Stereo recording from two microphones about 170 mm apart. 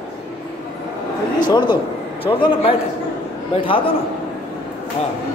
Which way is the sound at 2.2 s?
30° left (ahead or behind).